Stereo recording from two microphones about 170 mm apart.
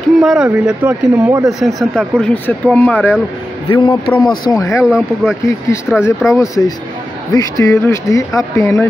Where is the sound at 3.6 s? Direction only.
25° left (ahead or behind).